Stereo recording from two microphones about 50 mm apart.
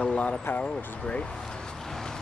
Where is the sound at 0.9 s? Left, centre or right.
Left.